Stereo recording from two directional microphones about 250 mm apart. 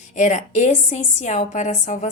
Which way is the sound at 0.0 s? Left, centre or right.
Left.